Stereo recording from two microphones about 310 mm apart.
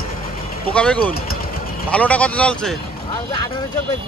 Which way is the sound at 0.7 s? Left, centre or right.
Centre.